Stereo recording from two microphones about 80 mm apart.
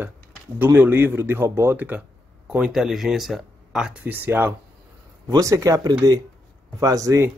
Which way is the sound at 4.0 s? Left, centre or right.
Right.